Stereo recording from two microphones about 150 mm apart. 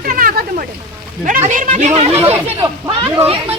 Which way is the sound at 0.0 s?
75° right (ahead or behind).